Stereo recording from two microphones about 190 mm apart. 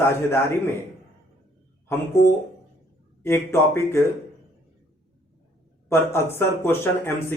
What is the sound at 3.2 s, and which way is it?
Speech, 15° left (ahead or behind).